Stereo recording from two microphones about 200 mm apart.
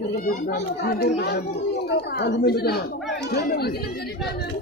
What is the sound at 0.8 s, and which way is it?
A woman's voice, 50° left (ahead or behind).